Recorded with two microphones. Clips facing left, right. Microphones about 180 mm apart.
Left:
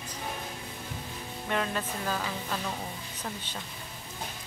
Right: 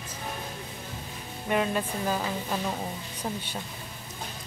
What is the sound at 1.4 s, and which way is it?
Speech, 15° right (ahead or behind).